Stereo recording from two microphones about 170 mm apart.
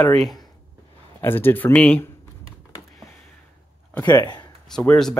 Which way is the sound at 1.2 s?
10° left (ahead or behind).